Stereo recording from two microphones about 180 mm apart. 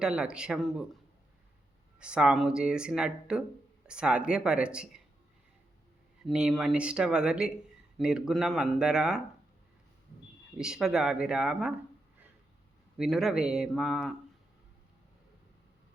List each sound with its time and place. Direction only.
0.0 s speech: 5° right (ahead or behind)
2.0 s speech: 5° right (ahead or behind)
6.2 s speech: centre (ahead or behind)
10.6 s speech: 5° right (ahead or behind)
13.0 s speech: centre (ahead or behind)